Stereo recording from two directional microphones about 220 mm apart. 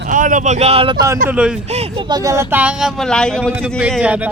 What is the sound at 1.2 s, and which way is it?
Speech, 5° right (ahead or behind).